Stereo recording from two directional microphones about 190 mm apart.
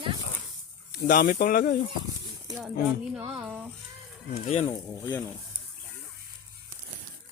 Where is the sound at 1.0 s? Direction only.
50° left (ahead or behind).